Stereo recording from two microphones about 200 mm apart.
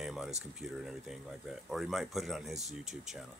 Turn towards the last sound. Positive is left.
turn(degrees=-35)  # may be behind; listen again after turning